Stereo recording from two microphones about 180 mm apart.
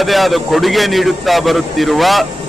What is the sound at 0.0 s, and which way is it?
Speech, centre (ahead or behind).